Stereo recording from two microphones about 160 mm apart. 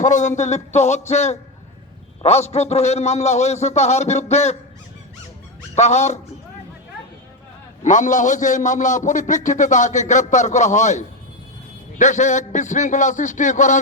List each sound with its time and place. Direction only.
0.0 s a man's voice: 50° left (ahead or behind)
5.7 s a man's voice: 45° left (ahead or behind)
7.9 s a man's voice: 50° left (ahead or behind)